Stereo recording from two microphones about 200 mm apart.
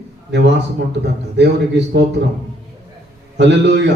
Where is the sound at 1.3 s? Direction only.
60° right (ahead or behind).